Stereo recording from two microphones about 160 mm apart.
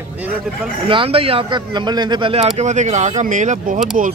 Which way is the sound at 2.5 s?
45° right (ahead or behind).